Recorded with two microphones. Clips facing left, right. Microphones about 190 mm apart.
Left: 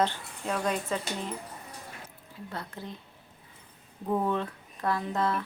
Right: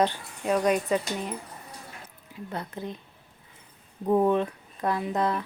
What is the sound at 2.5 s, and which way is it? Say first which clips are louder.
Speech: right 5 dB; 20° right (ahead or behind).